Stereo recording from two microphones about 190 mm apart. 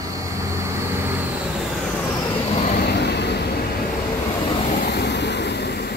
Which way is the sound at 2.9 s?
60° left (ahead or behind).